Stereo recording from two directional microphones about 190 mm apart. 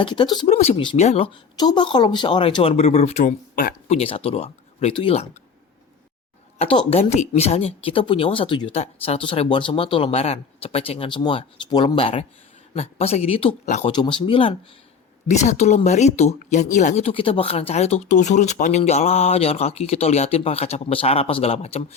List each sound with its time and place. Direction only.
0.0 s speech: 25° left (ahead or behind)
1.5 s speech: 20° left (ahead or behind); by 3.8 s 50° left (ahead or behind)
3.8 s speech: 30° left (ahead or behind)
6.6 s speech: 30° left (ahead or behind)
13.9 s speech: 25° left (ahead or behind)